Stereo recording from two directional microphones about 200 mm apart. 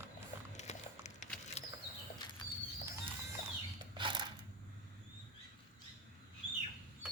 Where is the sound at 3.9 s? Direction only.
25° right (ahead or behind).